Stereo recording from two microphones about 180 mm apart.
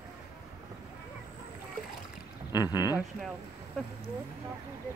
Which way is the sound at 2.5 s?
20° left (ahead or behind).